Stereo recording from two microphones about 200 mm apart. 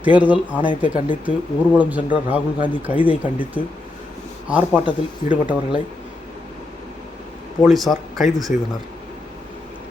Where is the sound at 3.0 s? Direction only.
10° right (ahead or behind).